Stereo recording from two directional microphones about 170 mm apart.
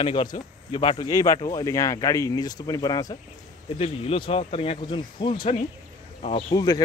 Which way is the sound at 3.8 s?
35° left (ahead or behind).